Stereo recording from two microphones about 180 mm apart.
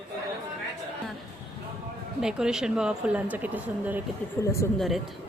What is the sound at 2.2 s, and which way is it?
A woman's voice, 5° right (ahead or behind).